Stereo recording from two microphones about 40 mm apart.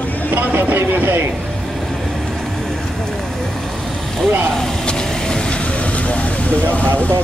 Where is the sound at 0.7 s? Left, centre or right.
Right.